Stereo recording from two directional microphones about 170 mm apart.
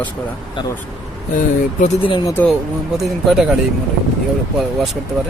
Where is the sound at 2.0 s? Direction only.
25° left (ahead or behind).